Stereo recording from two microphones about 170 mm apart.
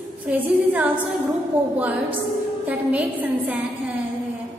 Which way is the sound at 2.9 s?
10° right (ahead or behind).